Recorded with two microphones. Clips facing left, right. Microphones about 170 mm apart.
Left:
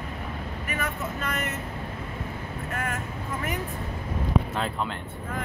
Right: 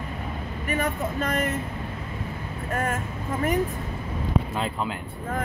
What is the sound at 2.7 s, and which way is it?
Speech, 40° right (ahead or behind).